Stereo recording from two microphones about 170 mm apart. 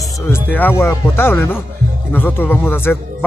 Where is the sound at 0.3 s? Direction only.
10° left (ahead or behind).